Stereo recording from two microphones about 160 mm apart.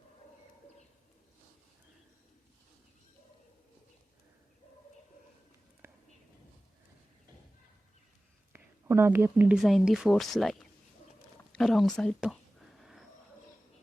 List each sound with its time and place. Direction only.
5.8 s whispering: 15° right (ahead or behind)
8.5 s speech: 15° right (ahead or behind); by 12.4 s 5° left (ahead or behind)
12.8 s wild animals: centre (ahead or behind)